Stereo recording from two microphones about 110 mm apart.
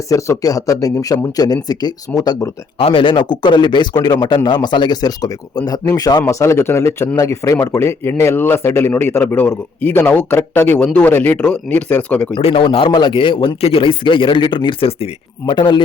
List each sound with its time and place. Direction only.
0.1 s a man's voice: 30° left (ahead or behind)
2.7 s a man's voice: 55° left (ahead or behind); by 12.3 s 10° left (ahead or behind)
12.4 s speech: 60° left (ahead or behind)
13.6 s speech: 60° left (ahead or behind)